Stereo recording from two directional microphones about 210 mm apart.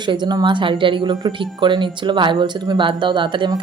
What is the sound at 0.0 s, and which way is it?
Speech, 20° right (ahead or behind).